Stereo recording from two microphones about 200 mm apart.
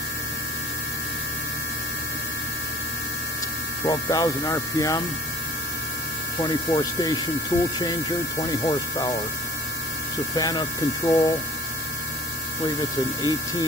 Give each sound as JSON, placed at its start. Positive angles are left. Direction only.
{"t": 3.8, "sound": "speech", "side_deg": 15}
{"t": 6.4, "sound": "speech", "side_deg": 20}
{"t": 10.3, "sound": "speech", "side_deg": 20}
{"t": 13.2, "sound": "speech", "side_deg": 20}